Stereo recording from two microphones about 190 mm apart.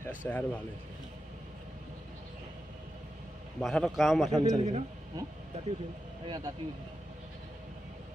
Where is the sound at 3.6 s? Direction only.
Centre (ahead or behind).